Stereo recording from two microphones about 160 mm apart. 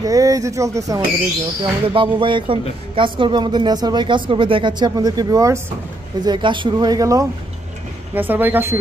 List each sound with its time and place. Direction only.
0.0 s speech: 20° right (ahead or behind)
1.6 s speech: 30° right (ahead or behind); by 8.7 s 15° right (ahead or behind)